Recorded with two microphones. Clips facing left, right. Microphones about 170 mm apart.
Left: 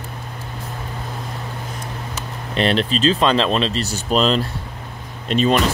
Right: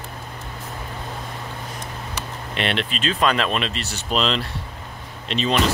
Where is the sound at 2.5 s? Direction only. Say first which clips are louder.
Left 7 dB; 35° left (ahead or behind).